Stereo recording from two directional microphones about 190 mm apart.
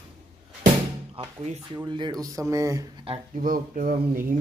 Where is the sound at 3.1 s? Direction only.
30° right (ahead or behind).